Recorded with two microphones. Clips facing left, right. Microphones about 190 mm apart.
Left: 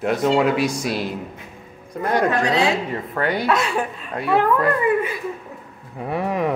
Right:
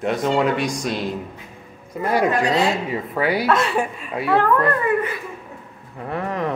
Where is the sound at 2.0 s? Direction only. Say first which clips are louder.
Even; 5° right (ahead or behind).